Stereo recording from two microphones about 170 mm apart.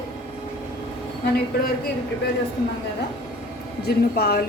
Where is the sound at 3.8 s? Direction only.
70° left (ahead or behind).